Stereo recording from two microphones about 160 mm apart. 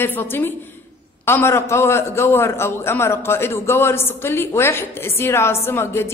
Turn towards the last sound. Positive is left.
turn(degrees=15)  # may be behind; listen again after turning